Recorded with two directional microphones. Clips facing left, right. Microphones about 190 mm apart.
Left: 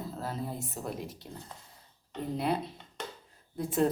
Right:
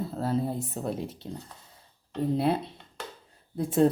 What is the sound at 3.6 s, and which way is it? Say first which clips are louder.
Speech: right 5 dB; 30° right (ahead or behind).